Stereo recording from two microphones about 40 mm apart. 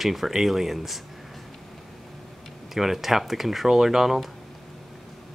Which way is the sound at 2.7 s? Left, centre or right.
Centre.